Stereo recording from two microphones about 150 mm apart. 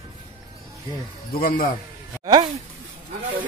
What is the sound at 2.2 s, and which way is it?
Speech, 30° right (ahead or behind).